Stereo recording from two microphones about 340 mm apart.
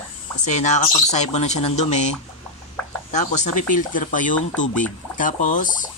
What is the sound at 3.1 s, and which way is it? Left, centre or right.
Speech, left.